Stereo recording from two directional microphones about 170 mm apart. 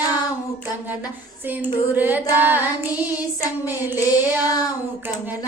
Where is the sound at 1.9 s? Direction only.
10° right (ahead or behind).